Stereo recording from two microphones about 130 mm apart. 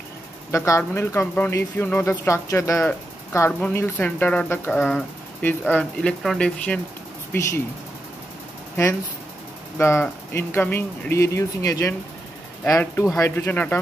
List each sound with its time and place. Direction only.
0.5 s speech: 25° left (ahead or behind); by 6.8 s 10° left (ahead or behind)
7.3 s speech: 20° left (ahead or behind)
9.8 s speech: 20° left (ahead or behind)